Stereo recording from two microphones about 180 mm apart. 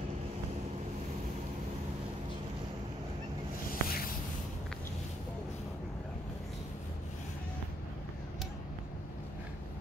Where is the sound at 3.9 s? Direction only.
55° left (ahead or behind).